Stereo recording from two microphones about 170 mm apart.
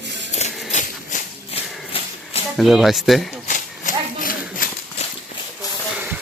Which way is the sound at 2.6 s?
Centre (ahead or behind).